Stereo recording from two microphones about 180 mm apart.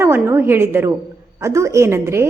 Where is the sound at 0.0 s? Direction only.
15° right (ahead or behind).